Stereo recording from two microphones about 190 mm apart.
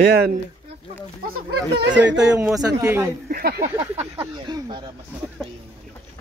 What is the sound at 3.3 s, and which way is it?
Speech, 55° right (ahead or behind).